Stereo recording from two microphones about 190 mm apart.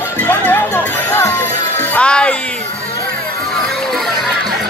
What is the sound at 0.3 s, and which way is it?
Music, 10° left (ahead or behind).